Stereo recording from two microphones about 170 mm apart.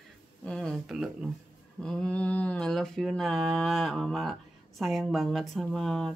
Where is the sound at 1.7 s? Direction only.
5° left (ahead or behind).